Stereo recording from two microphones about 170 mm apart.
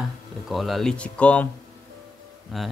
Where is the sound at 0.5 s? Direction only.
Centre (ahead or behind).